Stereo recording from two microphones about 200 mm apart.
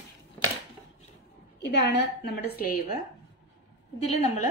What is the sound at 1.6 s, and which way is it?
A woman's voice, 55° left (ahead or behind).